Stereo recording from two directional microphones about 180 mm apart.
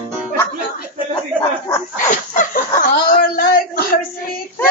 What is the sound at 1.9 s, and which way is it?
Speech, 45° left (ahead or behind).